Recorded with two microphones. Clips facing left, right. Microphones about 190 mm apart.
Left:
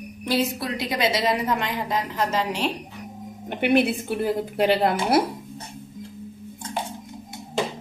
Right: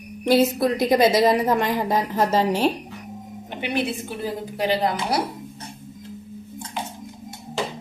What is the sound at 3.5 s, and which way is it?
Speech, 55° left (ahead or behind).